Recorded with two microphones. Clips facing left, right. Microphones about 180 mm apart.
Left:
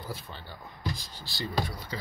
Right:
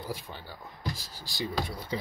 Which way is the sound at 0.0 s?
15° right (ahead or behind).